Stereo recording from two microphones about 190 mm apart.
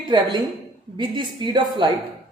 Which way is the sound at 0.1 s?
25° right (ahead or behind).